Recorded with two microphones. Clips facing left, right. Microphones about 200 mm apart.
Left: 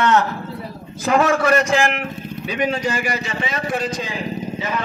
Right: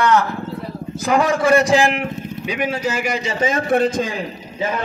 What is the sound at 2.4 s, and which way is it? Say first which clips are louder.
Speech: left 1 dB; 10° right (ahead or behind).